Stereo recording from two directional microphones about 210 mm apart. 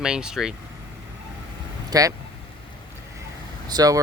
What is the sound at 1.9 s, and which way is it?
Speech, 15° right (ahead or behind).